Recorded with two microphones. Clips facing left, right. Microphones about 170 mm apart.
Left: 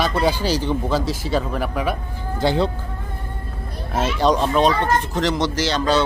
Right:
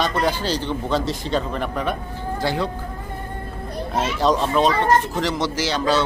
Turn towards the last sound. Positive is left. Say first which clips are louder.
# left 1 dB
turn(degrees=-5)  # may be behind; listen again after turning